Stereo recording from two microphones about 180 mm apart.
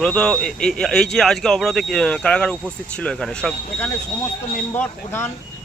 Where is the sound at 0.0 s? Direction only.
5° left (ahead or behind).